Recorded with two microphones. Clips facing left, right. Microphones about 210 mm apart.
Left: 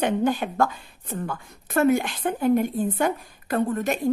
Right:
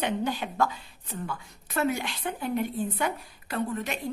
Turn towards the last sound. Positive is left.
turn(degrees=50)  # may be behind; listen again after turning